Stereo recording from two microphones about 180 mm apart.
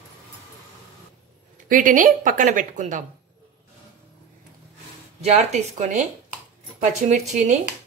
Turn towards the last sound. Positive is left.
turn(degrees=-40)  # may be behind; listen again after turning